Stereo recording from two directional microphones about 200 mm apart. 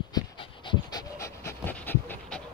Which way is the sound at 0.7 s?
15° left (ahead or behind).